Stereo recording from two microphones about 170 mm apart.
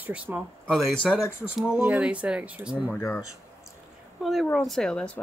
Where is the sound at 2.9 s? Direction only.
15° left (ahead or behind).